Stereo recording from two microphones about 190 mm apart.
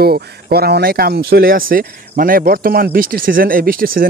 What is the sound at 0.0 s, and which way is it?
Speech, 55° right (ahead or behind).